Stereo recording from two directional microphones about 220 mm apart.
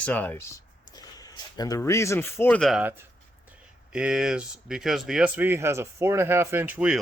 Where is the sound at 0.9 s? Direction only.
15° left (ahead or behind).